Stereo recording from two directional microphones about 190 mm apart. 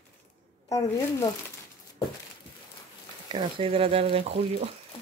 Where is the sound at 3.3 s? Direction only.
25° right (ahead or behind).